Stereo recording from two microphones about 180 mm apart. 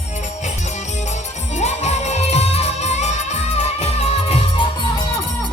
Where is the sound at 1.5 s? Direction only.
40° left (ahead or behind).